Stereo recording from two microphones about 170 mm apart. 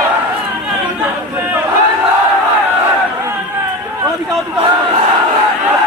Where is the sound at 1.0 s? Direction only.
10° right (ahead or behind).